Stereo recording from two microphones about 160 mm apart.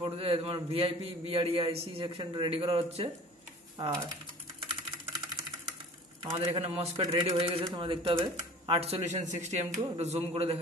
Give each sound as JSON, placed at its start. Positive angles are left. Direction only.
{"t": 0.0, "sound": "speech", "side_deg": -35}
{"t": 6.3, "sound": "speech", "side_deg": -30}